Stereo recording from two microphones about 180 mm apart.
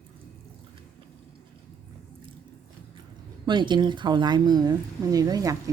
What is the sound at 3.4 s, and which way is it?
A woman's voice, 25° right (ahead or behind).